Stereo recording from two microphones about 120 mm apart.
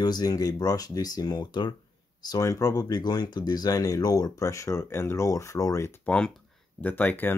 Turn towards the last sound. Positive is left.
turn(degrees=15)  # may be behind; listen again after turning